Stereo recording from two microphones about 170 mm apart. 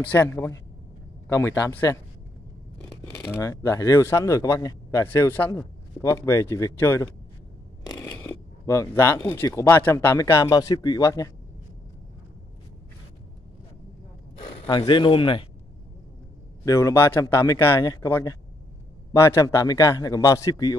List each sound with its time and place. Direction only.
0.0 s speech: 10° left (ahead or behind)
7.8 s a sound: 20° left (ahead or behind)
8.3 s speech: 15° left (ahead or behind)
14.6 s a man's voice: 25° left (ahead or behind)
16.6 s a man's voice: 20° left (ahead or behind)